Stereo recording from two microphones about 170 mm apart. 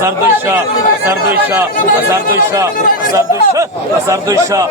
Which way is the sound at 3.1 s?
20° right (ahead or behind).